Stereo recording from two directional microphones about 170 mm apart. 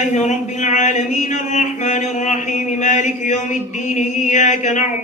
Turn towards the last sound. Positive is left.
turn(degrees=45)  # may be behind; listen again after turning